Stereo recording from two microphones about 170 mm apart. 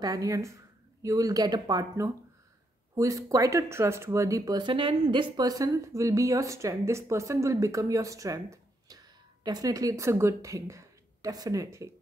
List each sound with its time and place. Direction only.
0.0 s speech: 20° right (ahead or behind)